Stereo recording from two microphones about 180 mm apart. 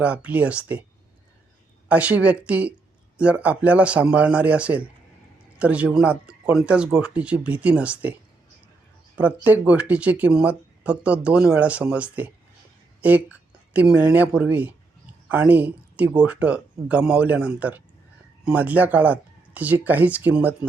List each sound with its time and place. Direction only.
0.0 s speech: 5° right (ahead or behind)
1.9 s speech: 10° right (ahead or behind)
9.1 s speech: 10° right (ahead or behind)